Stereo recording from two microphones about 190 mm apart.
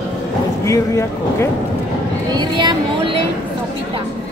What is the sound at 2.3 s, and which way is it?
Speech, 25° right (ahead or behind).